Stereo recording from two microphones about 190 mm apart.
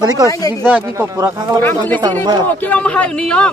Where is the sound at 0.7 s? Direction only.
10° right (ahead or behind).